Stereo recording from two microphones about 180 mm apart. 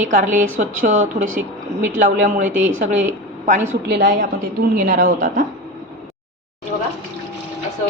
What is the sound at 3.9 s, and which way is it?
Speech, 70° right (ahead or behind).